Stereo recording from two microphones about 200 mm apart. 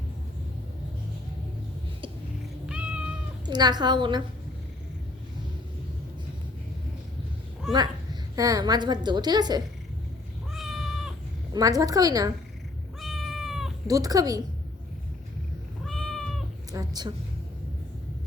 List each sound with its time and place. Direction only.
2.6 s cat: 5° right (ahead or behind)
3.4 s a woman's voice: 20° right (ahead or behind)
8.4 s a woman's voice: 20° right (ahead or behind)
10.5 s cat: centre (ahead or behind)
11.5 s a woman's voice: 20° right (ahead or behind)
13.0 s cat: centre (ahead or behind)
13.8 s speech: 20° right (ahead or behind)
15.9 s cat: 5° left (ahead or behind)
16.7 s a woman's voice: 20° right (ahead or behind)